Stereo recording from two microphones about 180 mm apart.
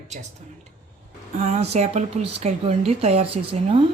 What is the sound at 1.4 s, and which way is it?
A woman's voice, 40° right (ahead or behind).